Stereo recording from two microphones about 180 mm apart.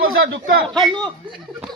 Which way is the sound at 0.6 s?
Centre (ahead or behind).